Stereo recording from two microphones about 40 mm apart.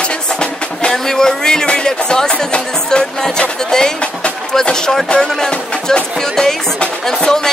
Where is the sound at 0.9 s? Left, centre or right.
Centre.